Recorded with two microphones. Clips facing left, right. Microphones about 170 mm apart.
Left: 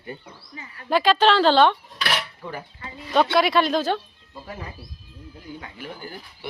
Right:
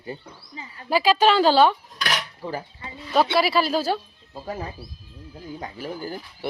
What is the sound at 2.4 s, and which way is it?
Speech, 35° right (ahead or behind).